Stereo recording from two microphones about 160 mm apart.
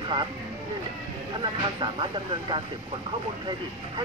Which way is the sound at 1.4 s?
30° right (ahead or behind).